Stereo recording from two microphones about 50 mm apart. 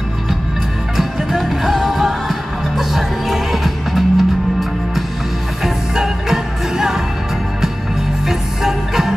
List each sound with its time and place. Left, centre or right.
0.9 s music: centre
8.3 s music: centre